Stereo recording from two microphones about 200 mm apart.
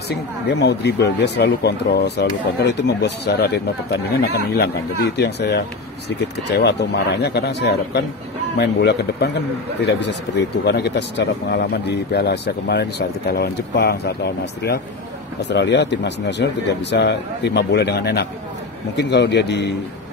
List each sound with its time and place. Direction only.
0.1 s speech: 60° left (ahead or behind)